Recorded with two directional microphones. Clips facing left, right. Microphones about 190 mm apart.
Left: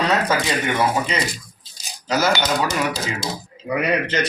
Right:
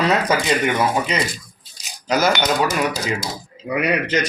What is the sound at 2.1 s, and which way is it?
Speech, 15° right (ahead or behind).